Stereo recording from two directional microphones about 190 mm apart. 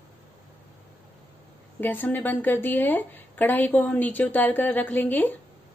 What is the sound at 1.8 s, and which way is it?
A woman's voice, 10° left (ahead or behind).